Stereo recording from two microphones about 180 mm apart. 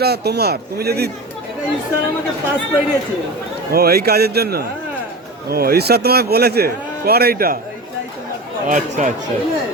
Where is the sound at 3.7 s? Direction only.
60° right (ahead or behind).